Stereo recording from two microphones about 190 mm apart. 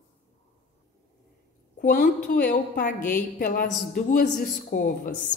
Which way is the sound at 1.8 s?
45° left (ahead or behind).